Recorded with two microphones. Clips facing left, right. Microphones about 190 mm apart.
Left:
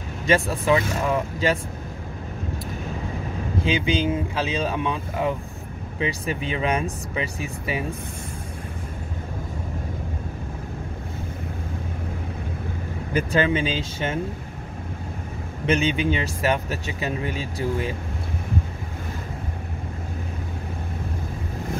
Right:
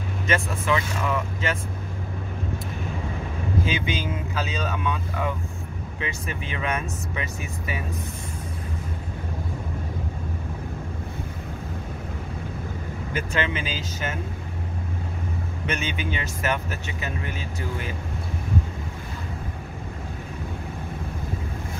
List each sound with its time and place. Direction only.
0.3 s speech: 35° left (ahead or behind)
3.6 s speech: 30° left (ahead or behind)
13.1 s speech: 35° left (ahead or behind)
15.6 s speech: 30° left (ahead or behind)